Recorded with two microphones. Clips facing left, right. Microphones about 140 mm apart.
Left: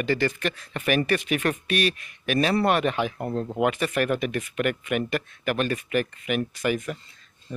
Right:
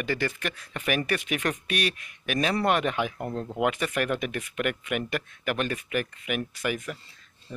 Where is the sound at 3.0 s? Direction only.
20° left (ahead or behind).